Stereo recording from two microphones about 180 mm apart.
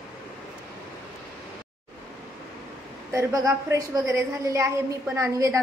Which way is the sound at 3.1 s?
15° right (ahead or behind).